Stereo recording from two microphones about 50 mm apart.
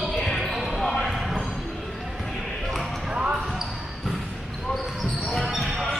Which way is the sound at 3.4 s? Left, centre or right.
Centre.